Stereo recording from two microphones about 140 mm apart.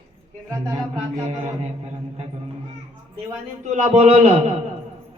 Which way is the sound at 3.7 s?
50° right (ahead or behind).